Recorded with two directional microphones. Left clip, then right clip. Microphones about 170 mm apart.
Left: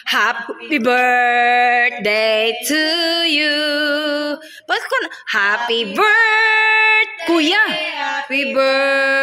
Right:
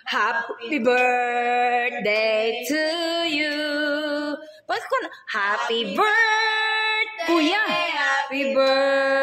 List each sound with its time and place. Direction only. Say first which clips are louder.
0.1 s speech: left 6 dB; 30° left (ahead or behind)
2.0 s music: left 5 dB; 35° left (ahead or behind)
8.4 s speech: left 6 dB; 25° left (ahead or behind)